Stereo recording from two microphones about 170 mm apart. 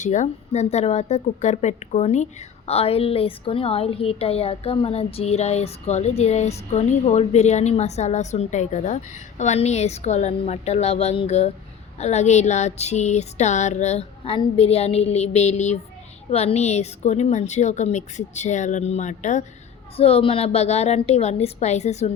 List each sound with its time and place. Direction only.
0.0 s a woman's voice: 45° left (ahead or behind)